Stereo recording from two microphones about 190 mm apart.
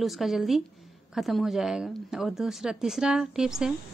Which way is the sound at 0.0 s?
Centre (ahead or behind).